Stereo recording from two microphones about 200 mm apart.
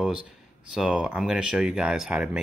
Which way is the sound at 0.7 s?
5° right (ahead or behind).